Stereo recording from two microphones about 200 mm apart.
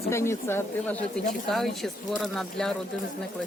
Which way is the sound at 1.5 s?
Centre (ahead or behind).